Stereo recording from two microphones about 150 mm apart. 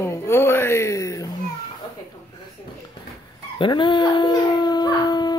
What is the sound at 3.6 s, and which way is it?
Dog, 35° left (ahead or behind).